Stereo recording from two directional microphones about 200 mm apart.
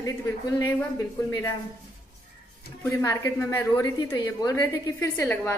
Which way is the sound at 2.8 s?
20° left (ahead or behind).